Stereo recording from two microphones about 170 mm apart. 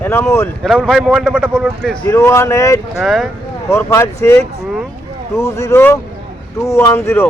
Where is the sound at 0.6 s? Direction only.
5° left (ahead or behind).